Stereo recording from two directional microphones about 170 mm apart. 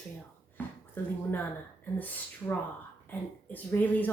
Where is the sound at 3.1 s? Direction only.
10° left (ahead or behind).